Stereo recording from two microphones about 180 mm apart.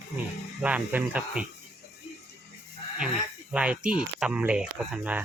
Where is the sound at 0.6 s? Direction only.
10° right (ahead or behind).